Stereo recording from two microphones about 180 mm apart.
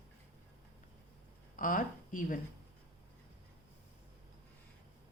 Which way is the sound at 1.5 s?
50° left (ahead or behind).